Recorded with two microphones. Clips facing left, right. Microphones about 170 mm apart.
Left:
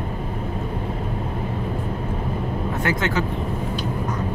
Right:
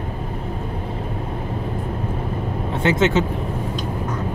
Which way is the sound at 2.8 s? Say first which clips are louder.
Right 7 dB; 25° right (ahead or behind).